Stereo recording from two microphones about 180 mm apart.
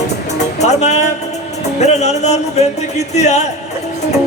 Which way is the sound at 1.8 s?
40° left (ahead or behind).